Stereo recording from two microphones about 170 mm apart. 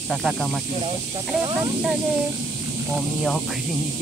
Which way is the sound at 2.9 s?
Centre (ahead or behind).